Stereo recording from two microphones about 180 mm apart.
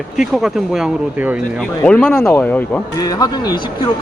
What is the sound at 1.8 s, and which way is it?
Speech, 5° left (ahead or behind).